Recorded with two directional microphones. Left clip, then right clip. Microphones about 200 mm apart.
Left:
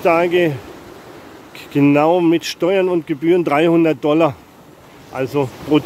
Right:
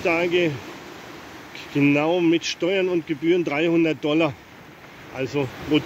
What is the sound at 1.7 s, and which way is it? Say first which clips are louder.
Speech: left 7 dB; 15° left (ahead or behind).